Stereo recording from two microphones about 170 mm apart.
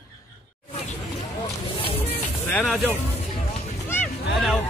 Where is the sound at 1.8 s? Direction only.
35° left (ahead or behind).